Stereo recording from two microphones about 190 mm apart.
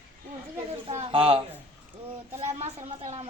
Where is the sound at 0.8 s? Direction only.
30° right (ahead or behind).